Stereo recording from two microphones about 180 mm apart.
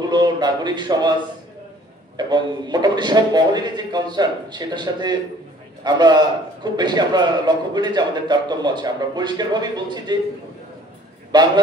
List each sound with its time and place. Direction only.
0.0 s speech: 20° right (ahead or behind)
2.1 s a man's voice: 25° right (ahead or behind)
11.3 s a man's voice: 25° right (ahead or behind)